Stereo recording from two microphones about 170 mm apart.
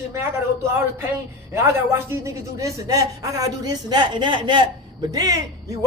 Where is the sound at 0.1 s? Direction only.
15° right (ahead or behind).